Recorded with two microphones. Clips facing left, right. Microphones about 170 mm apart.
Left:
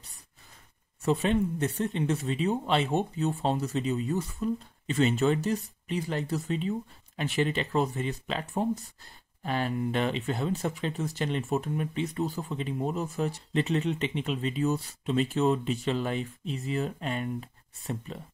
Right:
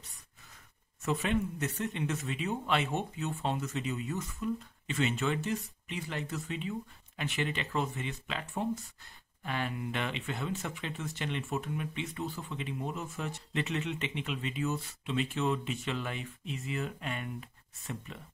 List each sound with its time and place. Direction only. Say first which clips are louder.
1.0 s speech: left 5 dB; 30° left (ahead or behind)